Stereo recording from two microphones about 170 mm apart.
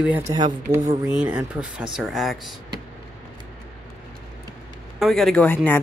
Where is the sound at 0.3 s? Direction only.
20° right (ahead or behind).